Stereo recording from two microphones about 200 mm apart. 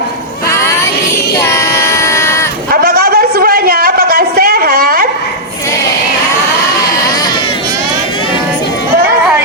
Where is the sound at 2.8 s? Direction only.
50° right (ahead or behind).